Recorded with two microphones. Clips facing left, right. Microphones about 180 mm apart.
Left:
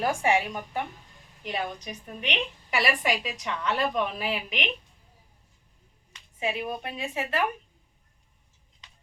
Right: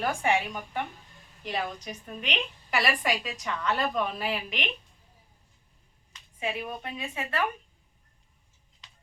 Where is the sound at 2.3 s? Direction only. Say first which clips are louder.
Even; centre (ahead or behind).